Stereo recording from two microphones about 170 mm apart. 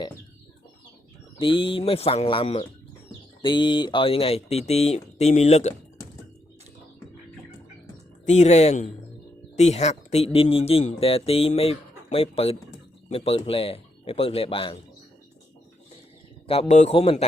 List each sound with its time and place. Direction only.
1.4 s speech: 30° left (ahead or behind)
8.2 s a man's voice: 45° left (ahead or behind)
16.5 s speech: 40° left (ahead or behind)